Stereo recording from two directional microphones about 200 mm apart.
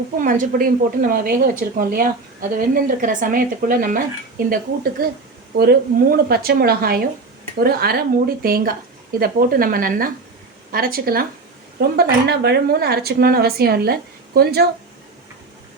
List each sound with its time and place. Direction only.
0.2 s speech: 40° right (ahead or behind)